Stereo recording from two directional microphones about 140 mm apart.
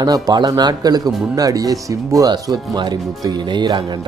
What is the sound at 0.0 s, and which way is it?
Speech, 30° right (ahead or behind).